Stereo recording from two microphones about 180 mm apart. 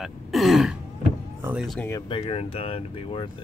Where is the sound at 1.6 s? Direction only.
10° left (ahead or behind).